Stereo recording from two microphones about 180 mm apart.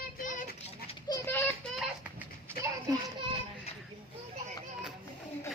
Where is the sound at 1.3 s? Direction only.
10° left (ahead or behind).